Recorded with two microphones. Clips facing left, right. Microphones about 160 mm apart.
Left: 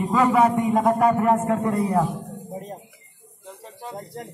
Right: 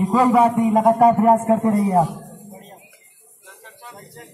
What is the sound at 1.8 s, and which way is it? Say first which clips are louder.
Music: right 4 dB; 40° right (ahead or behind).